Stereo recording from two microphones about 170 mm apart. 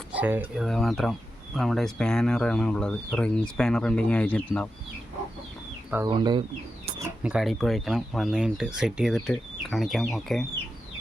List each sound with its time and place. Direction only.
0.1 s speech: 10° right (ahead or behind)
0.6 s speech: centre (ahead or behind)
6.1 s speech: 25° right (ahead or behind)
7.2 s speech: 5° right (ahead or behind)